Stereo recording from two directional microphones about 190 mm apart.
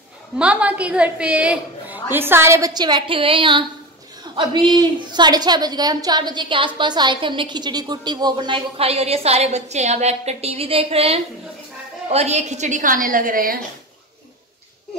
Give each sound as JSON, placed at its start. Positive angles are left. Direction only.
{"t": 0.4, "sound": "a woman's voice", "side_deg": -5}